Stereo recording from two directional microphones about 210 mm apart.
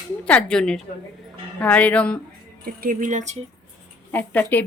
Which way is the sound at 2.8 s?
40° right (ahead or behind).